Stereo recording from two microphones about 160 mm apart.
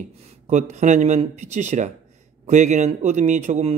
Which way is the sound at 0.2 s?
45° right (ahead or behind).